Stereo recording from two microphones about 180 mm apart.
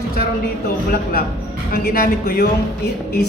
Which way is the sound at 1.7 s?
55° left (ahead or behind).